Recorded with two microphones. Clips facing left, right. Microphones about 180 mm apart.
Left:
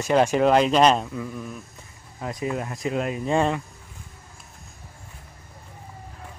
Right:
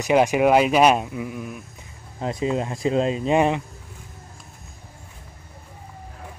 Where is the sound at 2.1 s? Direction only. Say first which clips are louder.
Right 4 dB; 25° right (ahead or behind).